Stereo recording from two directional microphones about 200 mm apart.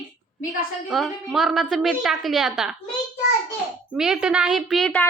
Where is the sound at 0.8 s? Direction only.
Centre (ahead or behind).